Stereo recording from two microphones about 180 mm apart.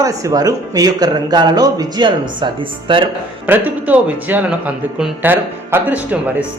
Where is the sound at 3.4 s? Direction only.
10° right (ahead or behind).